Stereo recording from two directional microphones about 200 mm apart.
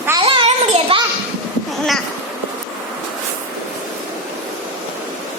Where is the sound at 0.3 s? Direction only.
25° right (ahead or behind).